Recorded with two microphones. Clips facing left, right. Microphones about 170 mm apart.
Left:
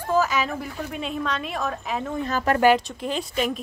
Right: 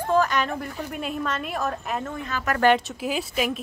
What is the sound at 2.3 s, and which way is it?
Speech, 40° left (ahead or behind).